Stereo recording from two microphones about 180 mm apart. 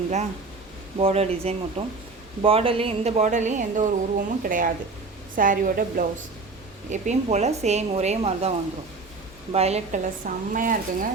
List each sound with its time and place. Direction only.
0.9 s speech: 35° right (ahead or behind)